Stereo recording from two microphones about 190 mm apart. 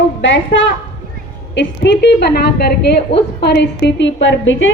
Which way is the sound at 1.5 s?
65° left (ahead or behind).